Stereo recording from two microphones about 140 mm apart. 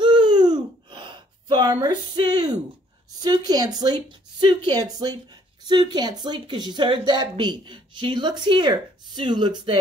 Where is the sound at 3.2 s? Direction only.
30° right (ahead or behind).